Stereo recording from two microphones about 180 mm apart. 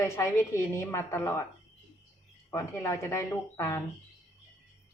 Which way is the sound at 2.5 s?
15° left (ahead or behind).